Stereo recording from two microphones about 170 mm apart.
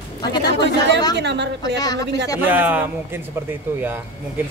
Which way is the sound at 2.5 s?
10° right (ahead or behind).